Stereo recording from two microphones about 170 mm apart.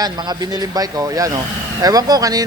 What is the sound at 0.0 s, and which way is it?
Speech, 25° right (ahead or behind).